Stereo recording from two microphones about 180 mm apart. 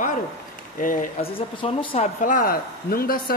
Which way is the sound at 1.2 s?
30° left (ahead or behind).